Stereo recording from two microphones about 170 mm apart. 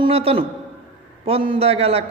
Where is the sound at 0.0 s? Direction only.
35° right (ahead or behind).